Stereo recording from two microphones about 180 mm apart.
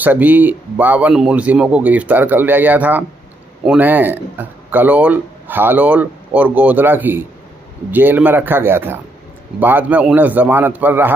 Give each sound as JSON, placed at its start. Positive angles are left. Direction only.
{"t": 0.0, "sound": "speech", "side_deg": -10}